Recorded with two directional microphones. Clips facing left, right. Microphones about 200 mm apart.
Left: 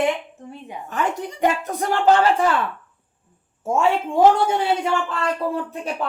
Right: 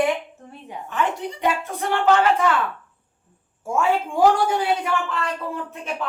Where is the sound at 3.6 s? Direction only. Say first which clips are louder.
Left 2 dB; 25° left (ahead or behind).